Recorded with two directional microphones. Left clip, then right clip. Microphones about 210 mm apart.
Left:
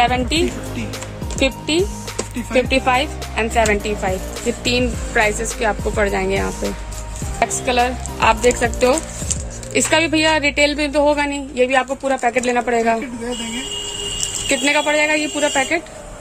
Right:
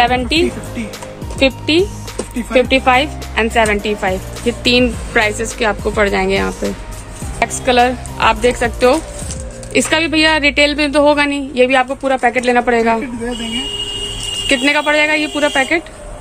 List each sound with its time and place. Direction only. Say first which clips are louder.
0.0 s speech: right 4 dB; 5° left (ahead or behind)
14.5 s speech: right 3 dB; centre (ahead or behind)